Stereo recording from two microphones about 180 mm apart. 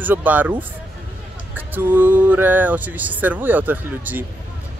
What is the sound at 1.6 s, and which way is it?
Speech, 10° right (ahead or behind).